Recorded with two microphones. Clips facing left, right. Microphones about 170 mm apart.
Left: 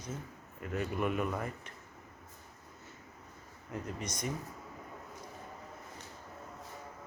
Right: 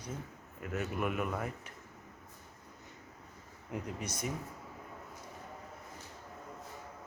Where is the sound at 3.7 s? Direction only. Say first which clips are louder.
Even; 10° right (ahead or behind).